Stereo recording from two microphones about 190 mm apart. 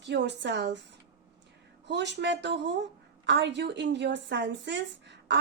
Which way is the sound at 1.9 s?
65° right (ahead or behind).